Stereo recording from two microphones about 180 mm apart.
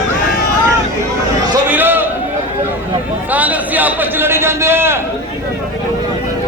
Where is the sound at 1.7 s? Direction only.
10° right (ahead or behind).